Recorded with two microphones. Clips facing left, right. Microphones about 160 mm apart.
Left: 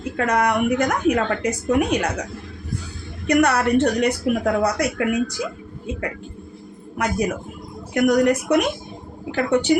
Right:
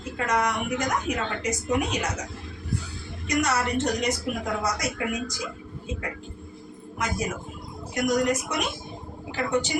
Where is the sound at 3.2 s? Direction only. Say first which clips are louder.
Left 8 dB; 60° left (ahead or behind).